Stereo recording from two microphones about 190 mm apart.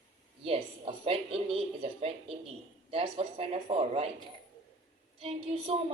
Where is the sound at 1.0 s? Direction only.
30° right (ahead or behind).